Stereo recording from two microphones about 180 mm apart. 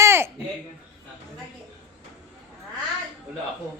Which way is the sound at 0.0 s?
15° right (ahead or behind).